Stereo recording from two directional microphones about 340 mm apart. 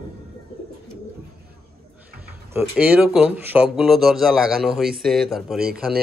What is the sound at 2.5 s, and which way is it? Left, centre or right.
A man's voice, centre.